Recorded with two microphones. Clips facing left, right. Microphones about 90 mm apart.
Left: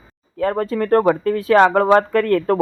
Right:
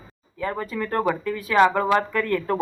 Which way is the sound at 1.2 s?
75° left (ahead or behind).